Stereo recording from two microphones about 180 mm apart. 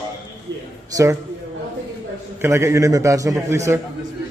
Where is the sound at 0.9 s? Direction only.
15° right (ahead or behind).